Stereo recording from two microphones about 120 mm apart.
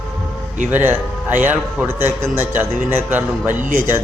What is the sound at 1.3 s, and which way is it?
Speech, 90° right.